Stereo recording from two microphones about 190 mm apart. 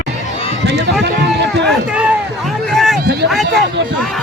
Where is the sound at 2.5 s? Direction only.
Centre (ahead or behind).